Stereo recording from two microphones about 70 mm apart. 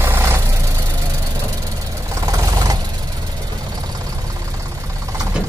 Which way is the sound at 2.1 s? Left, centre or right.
Right.